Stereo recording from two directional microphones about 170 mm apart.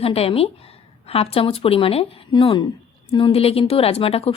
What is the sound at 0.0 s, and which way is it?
A woman's voice, 35° left (ahead or behind).